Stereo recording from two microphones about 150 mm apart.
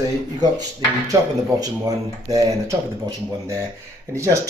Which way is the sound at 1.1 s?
25° right (ahead or behind).